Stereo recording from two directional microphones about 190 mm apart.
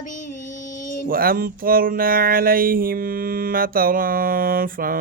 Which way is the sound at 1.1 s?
50° right (ahead or behind).